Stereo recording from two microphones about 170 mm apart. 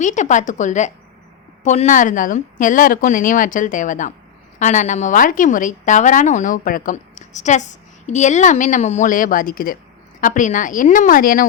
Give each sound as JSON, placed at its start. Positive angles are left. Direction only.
{"t": 0.0, "sound": "speech", "side_deg": 45}